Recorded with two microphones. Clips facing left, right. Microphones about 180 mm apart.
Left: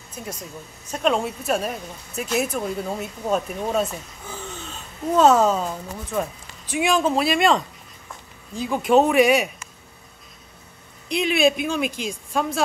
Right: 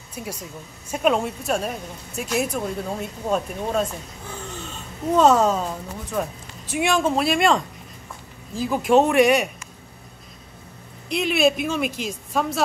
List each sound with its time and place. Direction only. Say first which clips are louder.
0.1 s a woman's voice: right 1 dB; 10° right (ahead or behind)
11.1 s speech: even; centre (ahead or behind)